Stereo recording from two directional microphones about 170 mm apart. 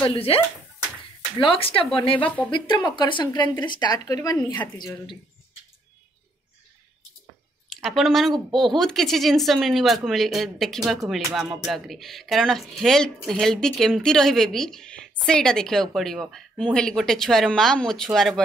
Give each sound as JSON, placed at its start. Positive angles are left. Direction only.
{"t": 0.1, "sound": "speech", "side_deg": 35}
{"t": 1.4, "sound": "speech", "side_deg": 30}
{"t": 7.7, "sound": "speech", "side_deg": 0}